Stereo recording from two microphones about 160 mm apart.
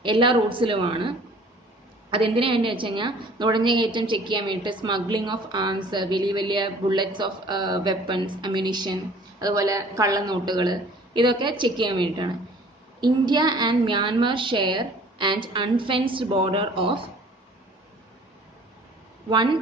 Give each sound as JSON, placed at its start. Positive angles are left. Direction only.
{"t": 0.0, "sound": "a woman's voice", "side_deg": -30}
{"t": 19.2, "sound": "a woman's voice", "side_deg": -30}